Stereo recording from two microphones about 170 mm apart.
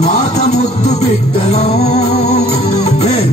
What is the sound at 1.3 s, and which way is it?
Music, 35° left (ahead or behind).